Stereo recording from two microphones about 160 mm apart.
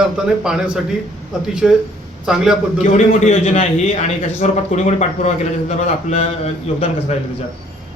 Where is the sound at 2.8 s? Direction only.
50° left (ahead or behind).